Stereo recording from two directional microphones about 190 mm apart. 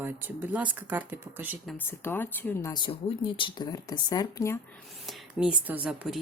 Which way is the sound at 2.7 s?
25° left (ahead or behind).